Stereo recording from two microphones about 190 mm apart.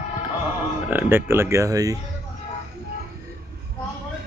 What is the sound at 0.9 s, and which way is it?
Speech, 10° right (ahead or behind).